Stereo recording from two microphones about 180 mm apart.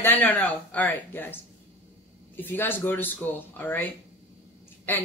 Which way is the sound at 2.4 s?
10° left (ahead or behind).